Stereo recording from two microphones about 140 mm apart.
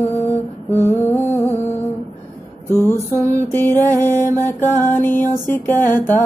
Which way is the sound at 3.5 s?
15° left (ahead or behind).